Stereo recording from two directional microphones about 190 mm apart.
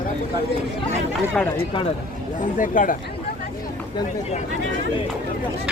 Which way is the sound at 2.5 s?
45° left (ahead or behind).